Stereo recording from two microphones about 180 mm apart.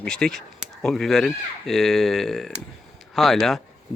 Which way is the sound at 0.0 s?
5° left (ahead or behind).